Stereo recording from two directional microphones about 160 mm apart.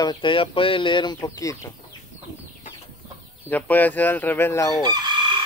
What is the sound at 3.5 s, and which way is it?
Speech, 10° left (ahead or behind).